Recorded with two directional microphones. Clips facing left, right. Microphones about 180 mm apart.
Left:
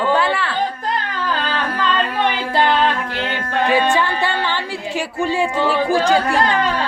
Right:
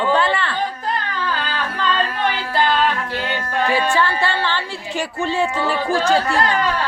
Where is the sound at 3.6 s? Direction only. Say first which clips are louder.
Left 2 dB; 20° left (ahead or behind).